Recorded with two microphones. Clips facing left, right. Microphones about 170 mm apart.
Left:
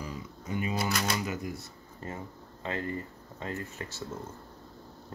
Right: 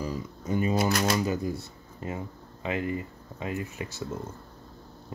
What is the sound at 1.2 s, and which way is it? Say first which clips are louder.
Speech: right 6 dB; 30° right (ahead or behind).